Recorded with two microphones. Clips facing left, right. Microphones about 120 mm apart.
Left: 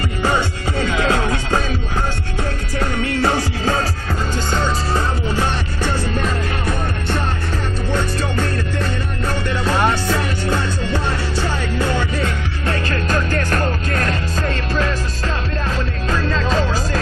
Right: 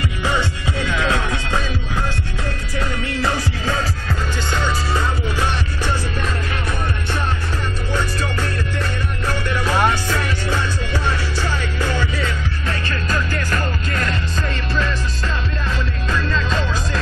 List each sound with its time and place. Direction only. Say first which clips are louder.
0.2 s music: left 3 dB; 35° left (ahead or behind)
2.8 s music: left 4 dB; 30° left (ahead or behind)
11.3 s music: left 3 dB; 20° left (ahead or behind)
12.2 s music: left 2 dB; 45° left (ahead or behind)